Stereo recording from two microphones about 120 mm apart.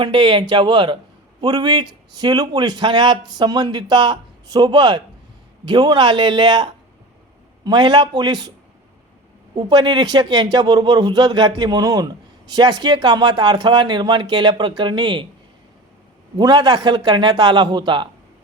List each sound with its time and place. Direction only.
0.0 s speech: 45° right (ahead or behind)
9.6 s speech: 40° right (ahead or behind)
16.4 s speech: 35° right (ahead or behind)